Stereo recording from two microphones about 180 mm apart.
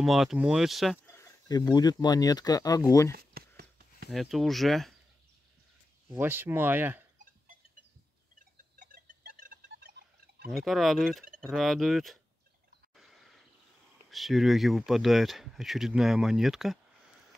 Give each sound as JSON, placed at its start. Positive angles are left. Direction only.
{"t": 0.0, "sound": "speech", "side_deg": 0}
{"t": 1.0, "sound": "speech", "side_deg": 15}
{"t": 3.1, "sound": "a sound", "side_deg": -60}
{"t": 4.1, "sound": "speech", "side_deg": 0}
{"t": 6.1, "sound": "speech", "side_deg": -10}
{"t": 8.7, "sound": "a sound", "side_deg": -50}
{"t": 10.5, "sound": "speech", "side_deg": 0}
{"t": 12.9, "sound": "a sound", "side_deg": 0}
{"t": 14.1, "sound": "speech", "side_deg": 0}